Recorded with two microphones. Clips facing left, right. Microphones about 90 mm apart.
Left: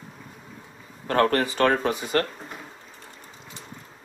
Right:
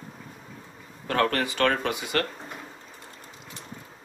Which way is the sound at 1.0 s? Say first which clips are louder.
Left 3 dB; 35° left (ahead or behind).